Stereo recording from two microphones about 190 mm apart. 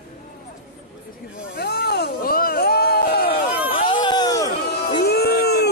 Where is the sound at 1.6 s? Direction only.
60° left (ahead or behind).